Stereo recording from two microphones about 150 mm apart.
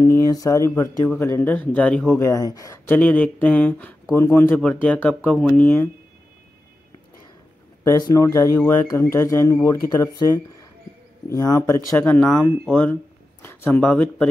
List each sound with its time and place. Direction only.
0.0 s speech: 25° left (ahead or behind)
2.1 s speech: 20° left (ahead or behind)
3.0 s speech: 10° left (ahead or behind)
7.8 s speech: 20° left (ahead or behind)
12.2 s speech: centre (ahead or behind)